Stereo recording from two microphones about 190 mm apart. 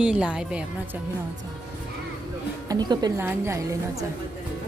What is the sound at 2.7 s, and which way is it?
A woman's voice, 20° right (ahead or behind).